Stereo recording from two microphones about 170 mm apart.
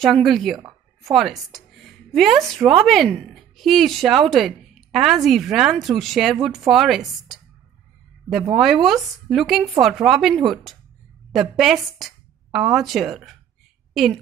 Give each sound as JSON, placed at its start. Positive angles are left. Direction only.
{"t": 0.0, "sound": "a woman's voice", "side_deg": 0}
{"t": 8.5, "sound": "a woman's voice", "side_deg": 0}